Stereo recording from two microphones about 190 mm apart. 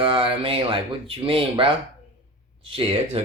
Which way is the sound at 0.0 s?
30° right (ahead or behind).